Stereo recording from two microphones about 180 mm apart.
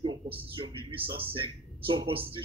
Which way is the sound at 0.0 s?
30° right (ahead or behind).